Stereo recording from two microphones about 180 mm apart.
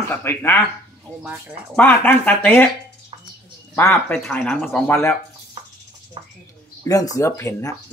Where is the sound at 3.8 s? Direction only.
10° left (ahead or behind).